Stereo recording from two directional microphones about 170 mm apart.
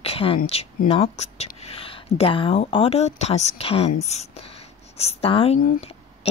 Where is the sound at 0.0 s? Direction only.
35° left (ahead or behind).